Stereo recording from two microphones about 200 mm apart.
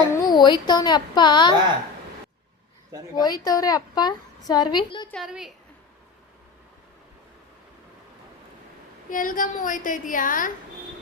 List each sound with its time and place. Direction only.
0.1 s speech: 20° left (ahead or behind)
3.2 s a woman's voice: 20° left (ahead or behind)
5.1 s a woman's voice: centre (ahead or behind)
9.0 s a woman's voice: 45° left (ahead or behind)